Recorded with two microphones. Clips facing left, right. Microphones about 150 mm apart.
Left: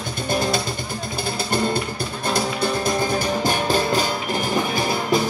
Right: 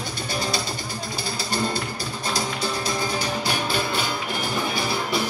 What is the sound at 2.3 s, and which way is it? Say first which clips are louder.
Music: left 5 dB; 55° left (ahead or behind).